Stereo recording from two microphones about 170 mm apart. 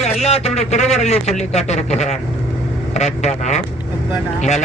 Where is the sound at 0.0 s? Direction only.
40° left (ahead or behind).